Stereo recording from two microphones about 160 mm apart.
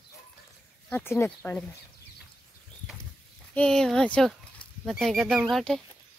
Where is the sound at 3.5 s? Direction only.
5° left (ahead or behind).